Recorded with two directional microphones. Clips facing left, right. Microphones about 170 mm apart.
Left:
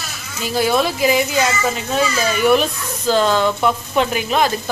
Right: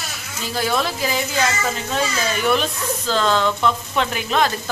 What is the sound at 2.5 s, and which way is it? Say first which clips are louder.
Speech: left 4 dB; 10° left (ahead or behind).